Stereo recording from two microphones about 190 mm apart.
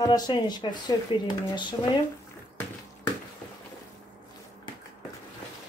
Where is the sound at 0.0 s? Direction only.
20° left (ahead or behind).